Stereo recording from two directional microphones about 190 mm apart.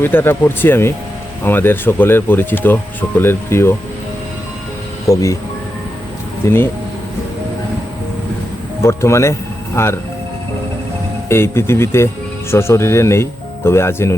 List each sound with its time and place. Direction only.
0.0 s speech: 10° left (ahead or behind)
5.0 s speech: 15° left (ahead or behind)
6.4 s speech: 10° left (ahead or behind)
8.8 s speech: 15° left (ahead or behind)
11.3 s speech: 15° left (ahead or behind)